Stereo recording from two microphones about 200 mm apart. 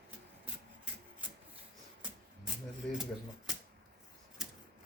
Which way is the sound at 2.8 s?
5° left (ahead or behind).